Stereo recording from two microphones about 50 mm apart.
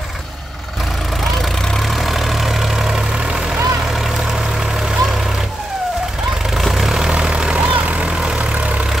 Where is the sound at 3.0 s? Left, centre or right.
Right.